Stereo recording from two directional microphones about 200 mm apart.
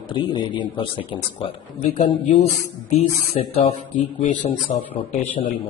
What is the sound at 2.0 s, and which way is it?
A man's voice, 25° left (ahead or behind).